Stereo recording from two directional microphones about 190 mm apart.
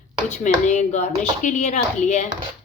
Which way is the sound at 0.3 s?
40° left (ahead or behind).